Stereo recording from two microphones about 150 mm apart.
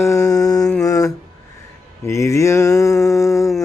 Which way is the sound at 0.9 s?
25° left (ahead or behind).